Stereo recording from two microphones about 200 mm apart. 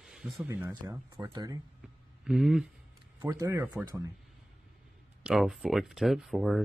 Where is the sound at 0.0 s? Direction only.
Centre (ahead or behind).